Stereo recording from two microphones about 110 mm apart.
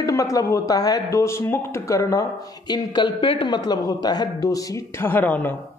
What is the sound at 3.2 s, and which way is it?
Speech, 55° left (ahead or behind).